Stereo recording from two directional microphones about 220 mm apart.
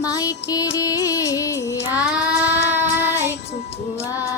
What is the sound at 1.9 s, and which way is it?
Child singing, 5° right (ahead or behind).